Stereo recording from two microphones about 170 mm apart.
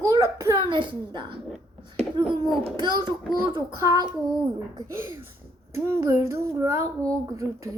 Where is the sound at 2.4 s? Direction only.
25° right (ahead or behind).